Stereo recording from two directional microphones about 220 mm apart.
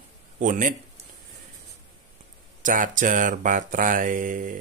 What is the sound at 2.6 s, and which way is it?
Speech, 35° right (ahead or behind).